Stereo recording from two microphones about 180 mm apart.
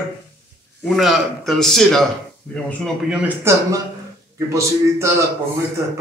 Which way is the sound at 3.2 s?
15° right (ahead or behind).